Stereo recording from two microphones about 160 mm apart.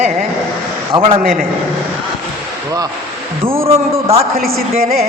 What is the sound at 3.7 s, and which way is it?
Speech, 40° right (ahead or behind).